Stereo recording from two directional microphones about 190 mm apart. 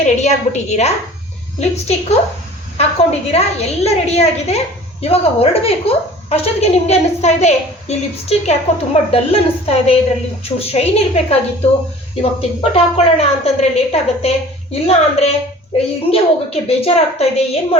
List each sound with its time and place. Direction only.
0.0 s a woman's voice: 35° left (ahead or behind)